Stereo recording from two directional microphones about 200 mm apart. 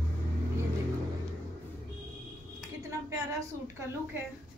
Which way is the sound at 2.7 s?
15° right (ahead or behind).